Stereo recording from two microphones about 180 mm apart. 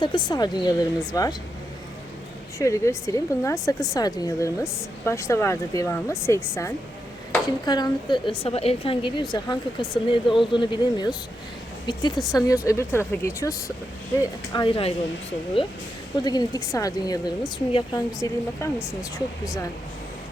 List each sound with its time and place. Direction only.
0.0 s a woman's voice: 25° left (ahead or behind)
2.6 s a woman's voice: 15° left (ahead or behind)
18.2 s a woman's voice: 15° left (ahead or behind)